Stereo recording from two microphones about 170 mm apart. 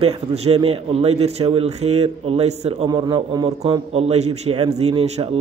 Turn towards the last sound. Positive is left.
turn(degrees=-40)  # may be behind; listen again after turning